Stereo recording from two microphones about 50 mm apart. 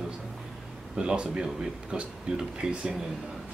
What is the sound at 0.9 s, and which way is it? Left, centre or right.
Speech, centre.